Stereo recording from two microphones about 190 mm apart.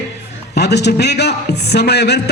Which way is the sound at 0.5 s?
60° left (ahead or behind).